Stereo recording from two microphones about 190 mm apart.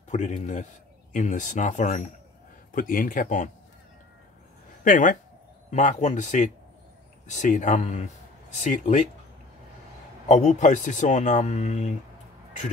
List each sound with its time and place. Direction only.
0.1 s speech: 40° left (ahead or behind)
4.8 s speech: 45° left (ahead or behind)
10.2 s speech: 40° left (ahead or behind)